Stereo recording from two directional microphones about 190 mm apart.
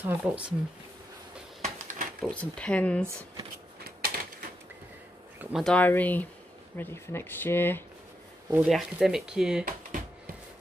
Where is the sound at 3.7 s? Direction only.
55° right (ahead or behind).